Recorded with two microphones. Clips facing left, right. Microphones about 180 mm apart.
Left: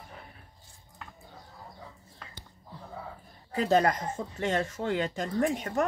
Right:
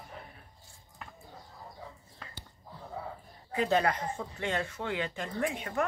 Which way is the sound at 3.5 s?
40° left (ahead or behind).